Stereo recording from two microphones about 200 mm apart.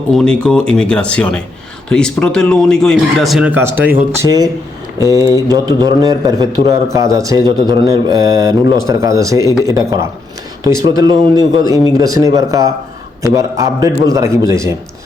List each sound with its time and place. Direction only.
0.1 s a man's voice: 5° left (ahead or behind); by 4.4 s 15° right (ahead or behind)
5.5 s speech: 20° right (ahead or behind)